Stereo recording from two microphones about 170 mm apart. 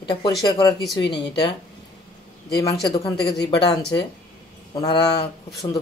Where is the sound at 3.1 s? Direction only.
70° left (ahead or behind).